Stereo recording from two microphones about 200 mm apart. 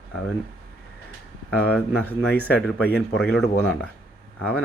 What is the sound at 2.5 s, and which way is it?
Speech, 5° left (ahead or behind).